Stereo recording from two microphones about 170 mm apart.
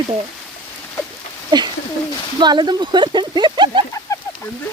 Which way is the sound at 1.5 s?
25° right (ahead or behind).